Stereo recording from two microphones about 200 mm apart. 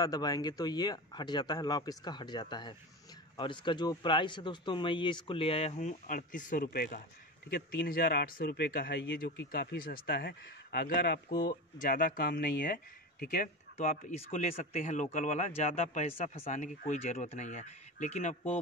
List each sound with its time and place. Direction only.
0.0 s speech: 20° left (ahead or behind); by 18.6 s 35° left (ahead or behind)